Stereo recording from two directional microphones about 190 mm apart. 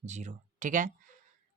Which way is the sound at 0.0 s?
40° right (ahead or behind).